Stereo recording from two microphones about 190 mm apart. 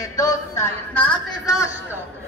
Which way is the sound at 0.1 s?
15° left (ahead or behind).